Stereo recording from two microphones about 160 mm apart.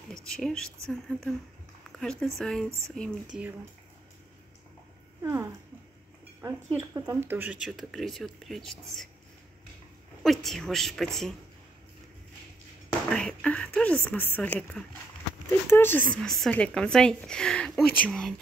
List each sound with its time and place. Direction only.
0.1 s speech: 5° left (ahead or behind)
5.2 s speech: 15° right (ahead or behind); by 9.1 s centre (ahead or behind)
10.2 s speech: centre (ahead or behind)
13.1 s speech: 5° left (ahead or behind)